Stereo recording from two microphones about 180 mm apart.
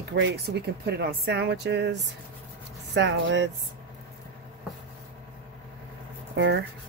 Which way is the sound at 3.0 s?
80° right.